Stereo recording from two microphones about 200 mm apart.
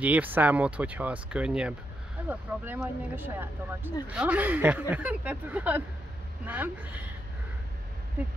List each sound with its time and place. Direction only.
0.0 s speech: 10° right (ahead or behind)